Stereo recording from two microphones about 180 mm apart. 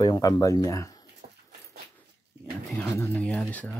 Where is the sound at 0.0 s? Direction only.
20° left (ahead or behind).